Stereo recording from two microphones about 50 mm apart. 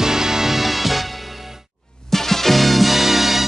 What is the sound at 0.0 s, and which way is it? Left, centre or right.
Music, centre.